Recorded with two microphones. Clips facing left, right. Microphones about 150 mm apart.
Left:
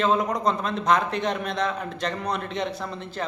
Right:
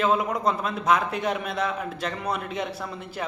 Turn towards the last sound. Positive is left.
turn(degrees=-10)  # may be behind; listen again after turning